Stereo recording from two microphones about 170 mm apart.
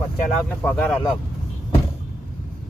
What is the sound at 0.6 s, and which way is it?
Speech, 5° left (ahead or behind).